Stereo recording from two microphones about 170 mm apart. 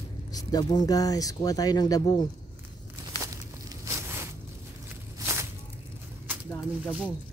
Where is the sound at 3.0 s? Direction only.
20° right (ahead or behind).